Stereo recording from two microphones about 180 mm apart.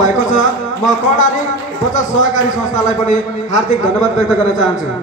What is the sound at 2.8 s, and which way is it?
Speech, 45° left (ahead or behind).